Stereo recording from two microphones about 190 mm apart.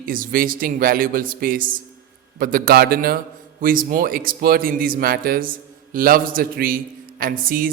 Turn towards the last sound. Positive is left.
turn(degrees=-50)  # may be behind; listen again after turning